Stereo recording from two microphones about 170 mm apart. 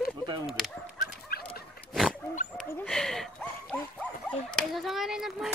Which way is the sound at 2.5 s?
5° left (ahead or behind).